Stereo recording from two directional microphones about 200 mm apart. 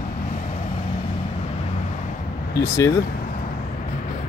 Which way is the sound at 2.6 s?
15° left (ahead or behind).